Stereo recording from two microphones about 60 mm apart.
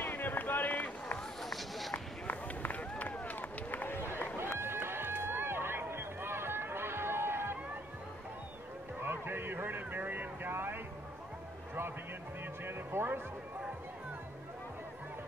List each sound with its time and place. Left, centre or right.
0.0 s run: left
1.1 s run: centre
2.2 s run: left
4.6 s run: right
9.0 s vehicle: right
12.6 s music: right